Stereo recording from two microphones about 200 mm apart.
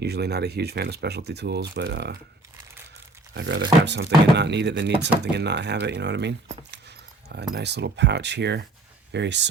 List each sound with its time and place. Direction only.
0.0 s speech: 55° right (ahead or behind)
3.3 s speech: 60° right (ahead or behind)
6.7 s a sound: 55° right (ahead or behind)
7.5 s speech: 55° right (ahead or behind)